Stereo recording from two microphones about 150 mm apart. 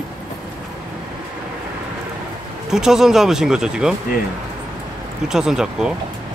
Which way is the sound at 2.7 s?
5° right (ahead or behind).